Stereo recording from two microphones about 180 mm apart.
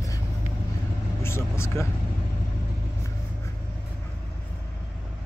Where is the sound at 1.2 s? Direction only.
15° left (ahead or behind).